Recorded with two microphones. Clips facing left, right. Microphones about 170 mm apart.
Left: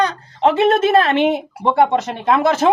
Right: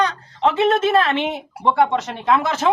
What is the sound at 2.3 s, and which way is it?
Speech, 45° left (ahead or behind).